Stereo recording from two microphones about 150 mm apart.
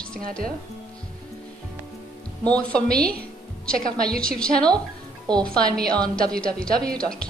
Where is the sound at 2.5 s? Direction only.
10° left (ahead or behind).